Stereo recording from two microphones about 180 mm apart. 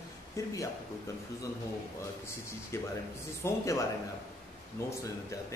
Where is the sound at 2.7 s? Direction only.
15° left (ahead or behind).